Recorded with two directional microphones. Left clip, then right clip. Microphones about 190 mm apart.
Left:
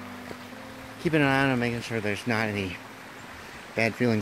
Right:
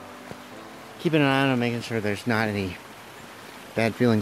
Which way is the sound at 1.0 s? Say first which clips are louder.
Right 2 dB; 15° right (ahead or behind).